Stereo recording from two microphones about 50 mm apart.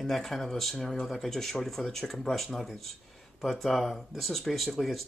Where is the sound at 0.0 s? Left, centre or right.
Centre.